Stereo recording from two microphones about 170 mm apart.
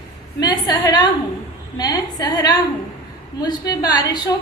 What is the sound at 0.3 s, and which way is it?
A woman's voice, 20° left (ahead or behind).